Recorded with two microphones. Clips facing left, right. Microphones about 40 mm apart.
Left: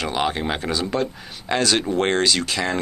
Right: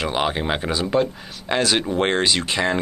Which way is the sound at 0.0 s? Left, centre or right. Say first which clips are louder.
Right 1 dB; centre.